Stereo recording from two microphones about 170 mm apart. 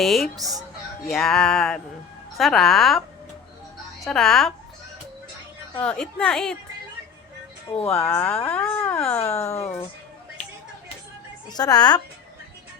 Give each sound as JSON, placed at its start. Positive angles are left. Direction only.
{"t": 0.0, "sound": "a woman's voice", "side_deg": 0}
{"t": 4.0, "sound": "a woman's voice", "side_deg": 0}
{"t": 5.7, "sound": "a woman's voice", "side_deg": 5}
{"t": 7.9, "sound": "speech", "side_deg": 15}
{"t": 9.5, "sound": "speech", "side_deg": 40}
{"t": 11.5, "sound": "a child's voice", "side_deg": 25}